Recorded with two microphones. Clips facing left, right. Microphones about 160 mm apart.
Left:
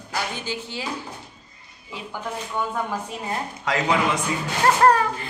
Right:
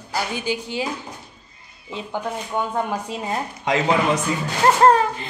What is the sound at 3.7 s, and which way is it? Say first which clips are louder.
Speech: right 4 dB; 20° right (ahead or behind).